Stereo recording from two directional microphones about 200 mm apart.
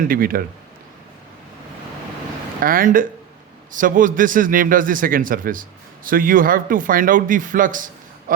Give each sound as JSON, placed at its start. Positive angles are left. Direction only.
{"t": 0.1, "sound": "a man's voice", "side_deg": -45}
{"t": 2.6, "sound": "a man's voice", "side_deg": -45}